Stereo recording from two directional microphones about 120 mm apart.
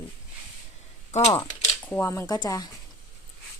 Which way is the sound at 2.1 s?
30° left (ahead or behind).